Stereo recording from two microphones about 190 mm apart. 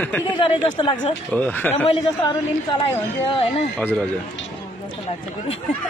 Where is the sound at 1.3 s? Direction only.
10° left (ahead or behind).